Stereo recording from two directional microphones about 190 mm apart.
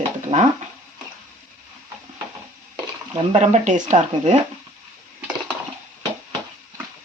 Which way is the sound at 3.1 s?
35° right (ahead or behind).